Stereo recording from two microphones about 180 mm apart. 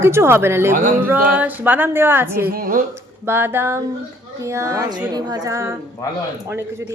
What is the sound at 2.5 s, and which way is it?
Speech, 50° right (ahead or behind).